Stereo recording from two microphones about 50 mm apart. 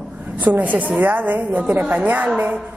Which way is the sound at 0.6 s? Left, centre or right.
Right.